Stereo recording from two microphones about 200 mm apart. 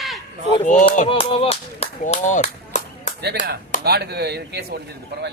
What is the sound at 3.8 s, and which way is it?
Speech, 55° right (ahead or behind).